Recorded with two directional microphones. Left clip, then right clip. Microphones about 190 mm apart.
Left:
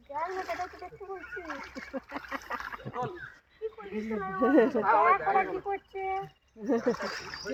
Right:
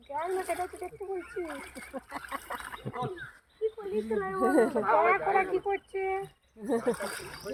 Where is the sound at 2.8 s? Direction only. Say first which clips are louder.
Right 2 dB; 15° right (ahead or behind).